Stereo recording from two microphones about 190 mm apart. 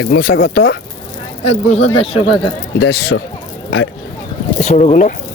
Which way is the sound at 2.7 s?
65° left (ahead or behind).